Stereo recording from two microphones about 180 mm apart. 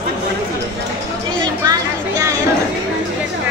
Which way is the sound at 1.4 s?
20° right (ahead or behind).